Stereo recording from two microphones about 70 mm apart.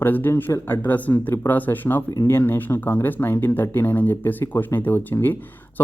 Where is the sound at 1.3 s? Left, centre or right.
Left.